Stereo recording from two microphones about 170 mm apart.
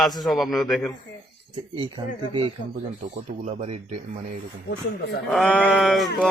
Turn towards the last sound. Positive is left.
turn(degrees=0)  # may be behind; listen again after turning